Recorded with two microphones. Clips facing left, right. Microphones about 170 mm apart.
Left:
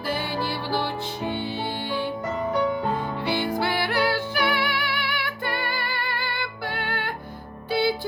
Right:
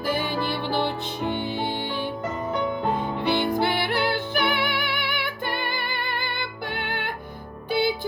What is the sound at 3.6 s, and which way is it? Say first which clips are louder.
Music: even; 20° right (ahead or behind).